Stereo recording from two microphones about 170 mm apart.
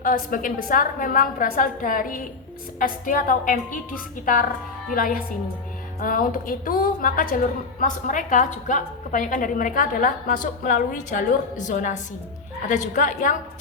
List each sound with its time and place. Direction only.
0.0 s a woman's voice: 55° left (ahead or behind)
4.9 s a woman's voice: 55° left (ahead or behind)